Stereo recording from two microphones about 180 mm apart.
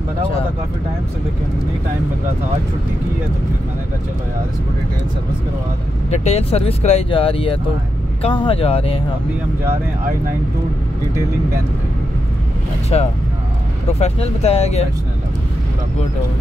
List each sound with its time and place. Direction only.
6.0 s speech: 40° left (ahead or behind)
12.9 s speech: 35° left (ahead or behind)